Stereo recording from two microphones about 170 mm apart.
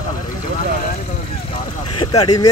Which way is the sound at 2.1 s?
20° left (ahead or behind).